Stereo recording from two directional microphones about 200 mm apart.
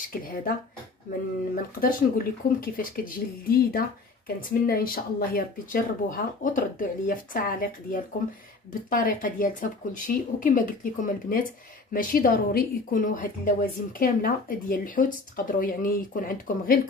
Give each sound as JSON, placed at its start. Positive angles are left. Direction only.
{"t": 1.5, "sound": "speech", "side_deg": 45}